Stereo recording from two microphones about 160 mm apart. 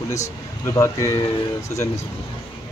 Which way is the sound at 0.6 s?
20° left (ahead or behind).